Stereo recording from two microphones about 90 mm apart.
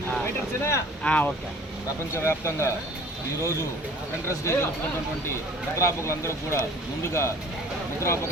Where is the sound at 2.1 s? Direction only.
30° left (ahead or behind).